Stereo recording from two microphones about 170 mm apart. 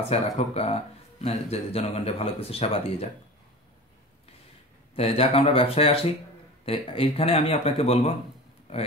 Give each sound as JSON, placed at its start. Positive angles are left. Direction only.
{"t": 0.1, "sound": "speech", "side_deg": 35}
{"t": 4.9, "sound": "speech", "side_deg": 35}